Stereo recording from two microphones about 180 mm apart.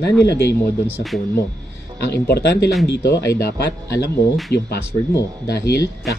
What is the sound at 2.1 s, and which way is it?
Speech, 65° left (ahead or behind).